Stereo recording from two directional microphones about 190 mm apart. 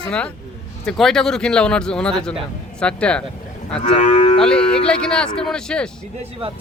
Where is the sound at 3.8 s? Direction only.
35° left (ahead or behind).